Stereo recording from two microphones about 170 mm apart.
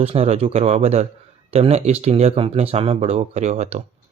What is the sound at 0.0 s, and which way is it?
Speech, 35° right (ahead or behind).